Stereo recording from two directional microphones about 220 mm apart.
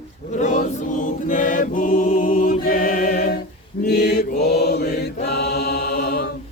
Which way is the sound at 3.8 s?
45° left (ahead or behind).